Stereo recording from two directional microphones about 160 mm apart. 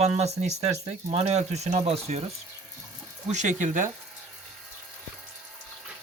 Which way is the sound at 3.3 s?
50° right (ahead or behind).